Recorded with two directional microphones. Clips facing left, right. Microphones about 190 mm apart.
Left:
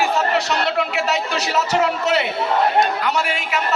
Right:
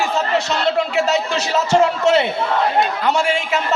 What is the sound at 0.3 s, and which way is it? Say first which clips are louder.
A man's voice: right 2 dB; 25° right (ahead or behind).